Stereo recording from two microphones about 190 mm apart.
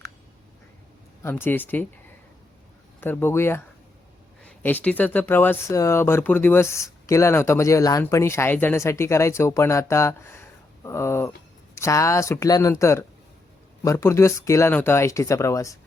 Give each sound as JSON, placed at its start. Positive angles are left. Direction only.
{"t": 1.2, "sound": "speech", "side_deg": 10}
{"t": 3.0, "sound": "speech", "side_deg": 10}